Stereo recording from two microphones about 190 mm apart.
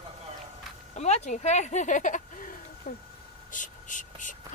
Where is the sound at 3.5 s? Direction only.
40° left (ahead or behind).